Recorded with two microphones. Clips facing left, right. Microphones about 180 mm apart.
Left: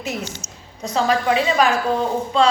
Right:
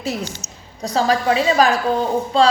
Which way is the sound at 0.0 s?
35° right (ahead or behind).